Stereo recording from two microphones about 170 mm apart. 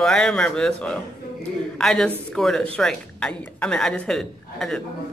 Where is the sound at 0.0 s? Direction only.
5° left (ahead or behind).